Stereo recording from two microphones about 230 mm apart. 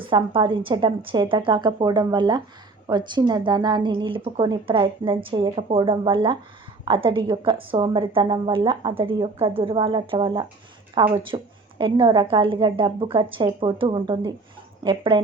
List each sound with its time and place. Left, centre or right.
0.0 s a woman's voice: right